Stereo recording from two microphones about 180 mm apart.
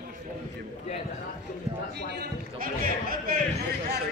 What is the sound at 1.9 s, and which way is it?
A man's voice, 65° right (ahead or behind).